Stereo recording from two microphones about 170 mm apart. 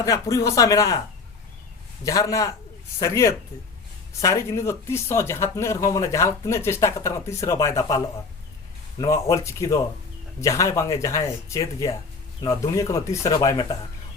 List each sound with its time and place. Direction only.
0.0 s speech: 20° left (ahead or behind)
2.0 s speech: 20° left (ahead or behind)